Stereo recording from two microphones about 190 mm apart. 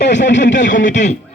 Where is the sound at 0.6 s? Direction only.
40° left (ahead or behind).